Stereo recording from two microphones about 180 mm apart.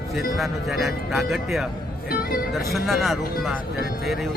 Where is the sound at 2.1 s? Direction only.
55° left (ahead or behind).